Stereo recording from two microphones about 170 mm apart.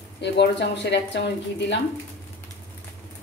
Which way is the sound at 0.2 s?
90° left.